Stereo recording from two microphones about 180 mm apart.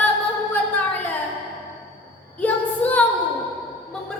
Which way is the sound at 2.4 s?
10° left (ahead or behind).